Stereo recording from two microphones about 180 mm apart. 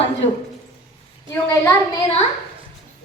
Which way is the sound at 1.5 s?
15° left (ahead or behind).